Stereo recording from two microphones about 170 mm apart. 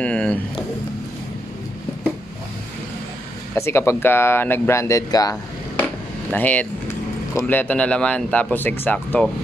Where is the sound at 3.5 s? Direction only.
15° left (ahead or behind).